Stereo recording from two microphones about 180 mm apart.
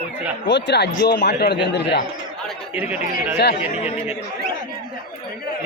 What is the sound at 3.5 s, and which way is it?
Speech, 35° left (ahead or behind).